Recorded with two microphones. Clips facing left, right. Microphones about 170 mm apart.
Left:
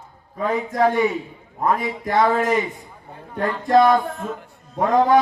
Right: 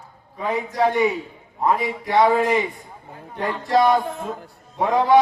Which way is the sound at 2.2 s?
10° right (ahead or behind).